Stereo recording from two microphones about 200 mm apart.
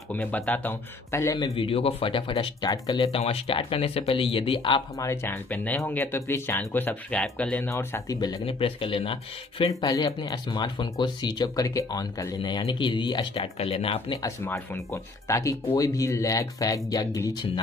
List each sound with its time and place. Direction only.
0.1 s speech: 10° left (ahead or behind); by 14.3 s 25° left (ahead or behind)
14.4 s speech: 10° left (ahead or behind)